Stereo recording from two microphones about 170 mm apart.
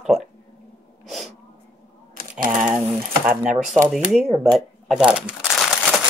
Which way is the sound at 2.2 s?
60° right (ahead or behind).